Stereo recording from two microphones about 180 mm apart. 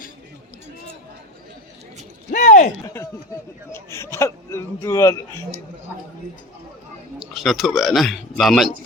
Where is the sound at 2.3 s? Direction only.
45° left (ahead or behind).